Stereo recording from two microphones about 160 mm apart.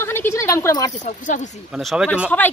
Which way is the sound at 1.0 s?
50° left (ahead or behind).